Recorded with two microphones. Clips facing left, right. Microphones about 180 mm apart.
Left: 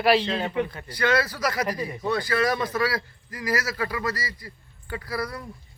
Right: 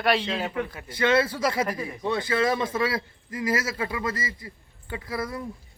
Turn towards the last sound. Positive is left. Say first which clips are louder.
# even
turn(degrees=-20)  # may be behind; listen again after turning